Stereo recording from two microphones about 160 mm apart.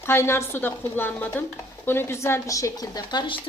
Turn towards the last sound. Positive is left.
turn(degrees=30)  # may be behind; listen again after turning